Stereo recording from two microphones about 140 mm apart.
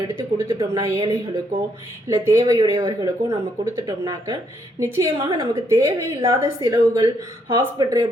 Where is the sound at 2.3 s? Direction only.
25° right (ahead or behind).